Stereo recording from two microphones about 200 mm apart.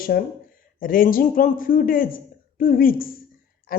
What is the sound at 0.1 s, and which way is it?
Speech, 55° left (ahead or behind).